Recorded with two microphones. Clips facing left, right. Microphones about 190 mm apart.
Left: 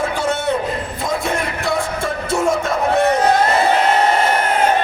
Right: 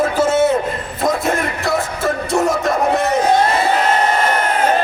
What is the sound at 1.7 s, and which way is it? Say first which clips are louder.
Music: right 2 dB; centre (ahead or behind).